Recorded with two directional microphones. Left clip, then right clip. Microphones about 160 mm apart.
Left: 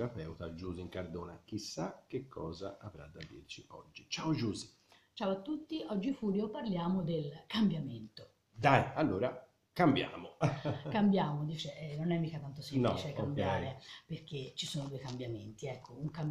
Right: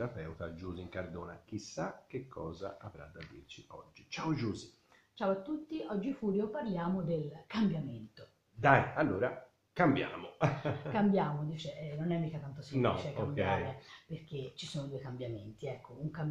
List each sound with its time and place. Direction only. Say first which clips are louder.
0.0 s speech: right 1 dB; 5° left (ahead or behind)
4.1 s speech: even; centre (ahead or behind)
8.5 s speech: right 2 dB; 15° left (ahead or behind)
10.4 s speech: right 2 dB; centre (ahead or behind)